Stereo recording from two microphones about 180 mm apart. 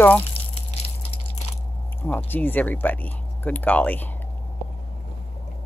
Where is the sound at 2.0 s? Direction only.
10° left (ahead or behind).